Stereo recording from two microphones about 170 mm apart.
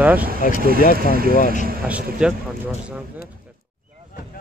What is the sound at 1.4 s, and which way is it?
Speech, 50° left (ahead or behind).